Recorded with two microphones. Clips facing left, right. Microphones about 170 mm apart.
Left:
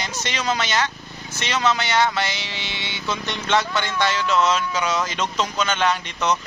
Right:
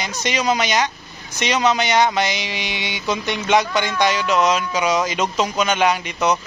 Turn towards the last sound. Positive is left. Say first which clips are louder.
# right 3 dB
turn(degrees=-10)  # may be behind; listen again after turning